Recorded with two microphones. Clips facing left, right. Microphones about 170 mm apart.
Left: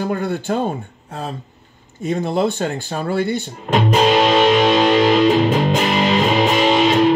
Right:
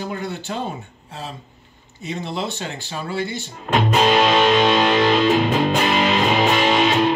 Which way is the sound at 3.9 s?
15° left (ahead or behind).